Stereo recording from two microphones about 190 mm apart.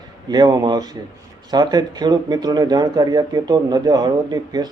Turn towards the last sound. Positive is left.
turn(degrees=-20)  # may be behind; listen again after turning